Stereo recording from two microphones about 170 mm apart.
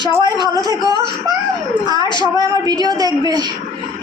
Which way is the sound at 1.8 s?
25° right (ahead or behind).